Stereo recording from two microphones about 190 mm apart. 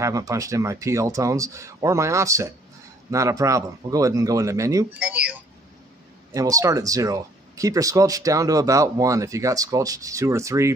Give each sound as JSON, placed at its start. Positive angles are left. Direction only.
{"t": 0.0, "sound": "speech", "side_deg": -15}
{"t": 6.3, "sound": "speech", "side_deg": -20}